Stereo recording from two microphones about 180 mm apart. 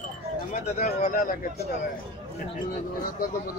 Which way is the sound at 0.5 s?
45° left (ahead or behind).